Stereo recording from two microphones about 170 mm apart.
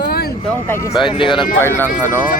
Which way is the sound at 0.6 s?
15° left (ahead or behind).